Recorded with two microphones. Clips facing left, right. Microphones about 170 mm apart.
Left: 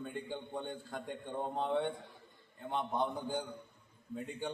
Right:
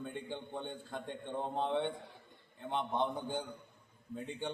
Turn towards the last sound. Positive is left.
turn(degrees=5)  # may be behind; listen again after turning